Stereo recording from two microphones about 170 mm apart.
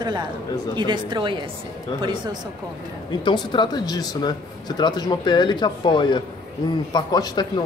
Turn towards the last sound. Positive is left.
turn(degrees=25)  # may be behind; listen again after turning